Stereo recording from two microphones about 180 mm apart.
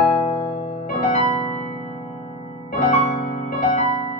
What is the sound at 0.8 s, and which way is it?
Music, 45° left (ahead or behind).